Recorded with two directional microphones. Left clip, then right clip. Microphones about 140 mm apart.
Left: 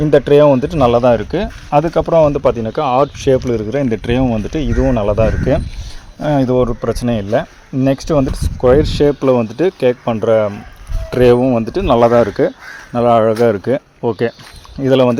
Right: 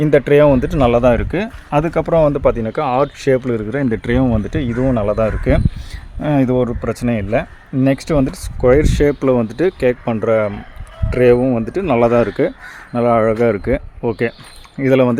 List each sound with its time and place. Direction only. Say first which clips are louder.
0.0 s speech: left 2 dB; 5° left (ahead or behind)
11.1 s speech: left 2 dB; 20° left (ahead or behind); by 15.1 s centre (ahead or behind)